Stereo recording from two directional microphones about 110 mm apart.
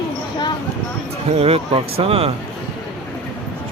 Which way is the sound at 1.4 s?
60° right (ahead or behind).